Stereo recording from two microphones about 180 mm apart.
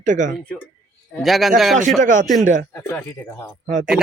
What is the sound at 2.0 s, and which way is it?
Speech, 45° right (ahead or behind).